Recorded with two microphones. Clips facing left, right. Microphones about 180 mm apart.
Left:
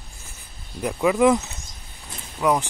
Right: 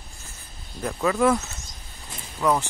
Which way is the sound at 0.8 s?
15° left (ahead or behind).